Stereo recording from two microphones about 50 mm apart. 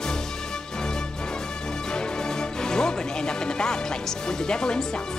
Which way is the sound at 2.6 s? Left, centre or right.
Centre.